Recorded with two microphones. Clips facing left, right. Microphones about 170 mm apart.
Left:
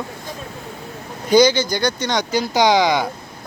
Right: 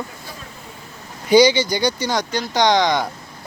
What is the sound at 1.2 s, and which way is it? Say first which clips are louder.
Speech: right 1 dB; 10° right (ahead or behind).